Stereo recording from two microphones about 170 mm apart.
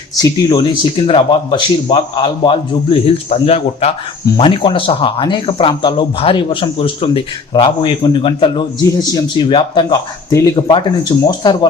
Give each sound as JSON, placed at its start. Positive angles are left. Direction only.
{"t": 0.2, "sound": "speech", "side_deg": 20}